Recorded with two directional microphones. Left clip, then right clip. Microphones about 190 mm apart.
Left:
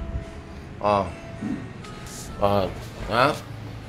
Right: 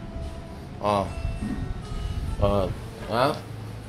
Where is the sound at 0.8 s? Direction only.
Centre (ahead or behind).